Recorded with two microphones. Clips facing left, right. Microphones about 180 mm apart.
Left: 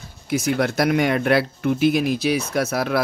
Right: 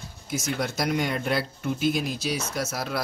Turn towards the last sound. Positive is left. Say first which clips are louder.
# left 8 dB
turn(degrees=65)  # may be behind; listen again after turning